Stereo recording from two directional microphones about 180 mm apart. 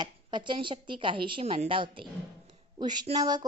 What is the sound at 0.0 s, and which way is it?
A woman's voice, 25° right (ahead or behind).